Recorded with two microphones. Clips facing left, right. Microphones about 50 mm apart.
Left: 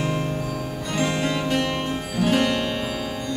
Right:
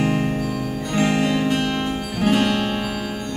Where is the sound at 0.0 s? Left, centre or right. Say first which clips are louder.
Right 4 dB; right.